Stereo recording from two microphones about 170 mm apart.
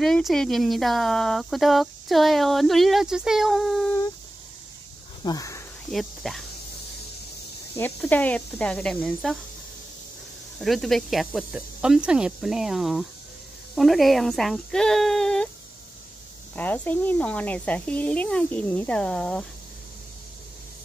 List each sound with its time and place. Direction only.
0.0 s speech: centre (ahead or behind)
5.2 s speech: 20° left (ahead or behind)
5.9 s speech: centre (ahead or behind)
7.7 s speech: 10° left (ahead or behind)
10.6 s speech: centre (ahead or behind)
16.5 s speech: 10° left (ahead or behind)